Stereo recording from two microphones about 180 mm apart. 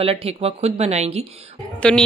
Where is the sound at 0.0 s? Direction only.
30° right (ahead or behind).